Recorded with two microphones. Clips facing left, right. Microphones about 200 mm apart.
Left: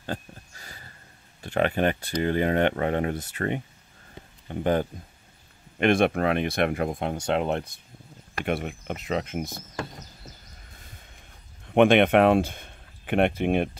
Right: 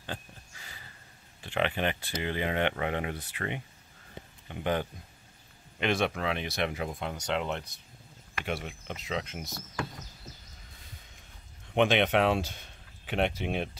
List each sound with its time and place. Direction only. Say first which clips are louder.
0.0 s a sound: left 7 dB; 45° left (ahead or behind)
1.4 s speech: left 6 dB; 45° left (ahead or behind)
11.6 s speech: left 7 dB; 55° left (ahead or behind)